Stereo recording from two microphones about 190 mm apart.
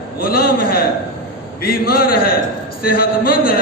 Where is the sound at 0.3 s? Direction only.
50° left (ahead or behind).